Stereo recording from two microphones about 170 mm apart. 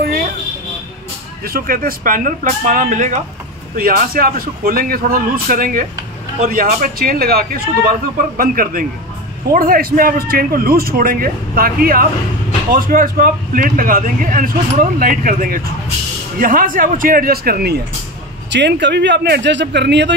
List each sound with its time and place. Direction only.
1.4 s speech: 60° right (ahead or behind)
3.7 s speech: 60° right (ahead or behind)
18.5 s speech: 90° right